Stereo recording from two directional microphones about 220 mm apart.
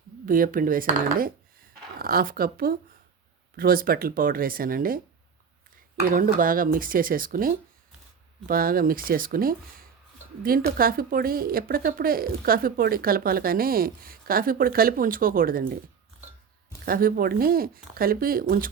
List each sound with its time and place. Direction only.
0.3 s speech: 40° right (ahead or behind)
16.8 s speech: 40° right (ahead or behind)